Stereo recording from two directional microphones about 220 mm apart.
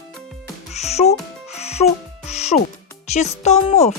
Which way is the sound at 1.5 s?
30° left (ahead or behind).